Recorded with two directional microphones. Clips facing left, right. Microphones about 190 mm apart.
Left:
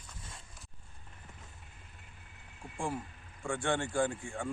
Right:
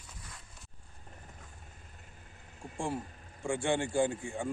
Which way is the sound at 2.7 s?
25° right (ahead or behind).